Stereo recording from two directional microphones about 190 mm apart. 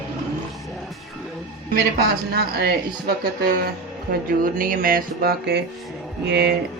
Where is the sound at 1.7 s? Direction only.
55° right (ahead or behind).